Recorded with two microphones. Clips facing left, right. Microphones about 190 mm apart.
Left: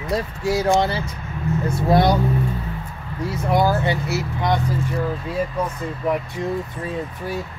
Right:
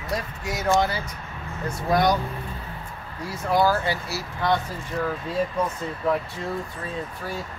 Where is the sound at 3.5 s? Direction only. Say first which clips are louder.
Left 2 dB; 20° left (ahead or behind).